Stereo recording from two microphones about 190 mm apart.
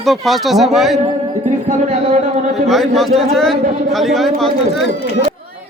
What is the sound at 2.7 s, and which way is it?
Speech, centre (ahead or behind).